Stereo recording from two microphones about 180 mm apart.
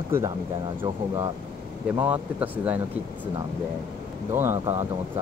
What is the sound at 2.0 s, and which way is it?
Speech, 10° right (ahead or behind).